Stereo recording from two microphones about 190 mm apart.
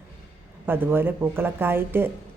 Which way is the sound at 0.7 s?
10° right (ahead or behind).